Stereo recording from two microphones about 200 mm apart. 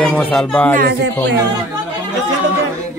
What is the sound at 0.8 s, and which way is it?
Speech, 55° right (ahead or behind).